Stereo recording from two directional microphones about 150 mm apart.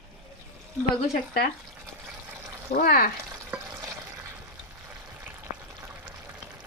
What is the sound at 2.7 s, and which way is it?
Speech, 85° left.